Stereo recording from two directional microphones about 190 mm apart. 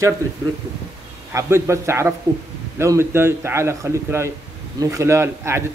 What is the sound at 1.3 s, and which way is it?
Speech, 15° right (ahead or behind).